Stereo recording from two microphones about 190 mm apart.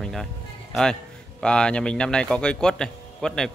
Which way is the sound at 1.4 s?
5° left (ahead or behind).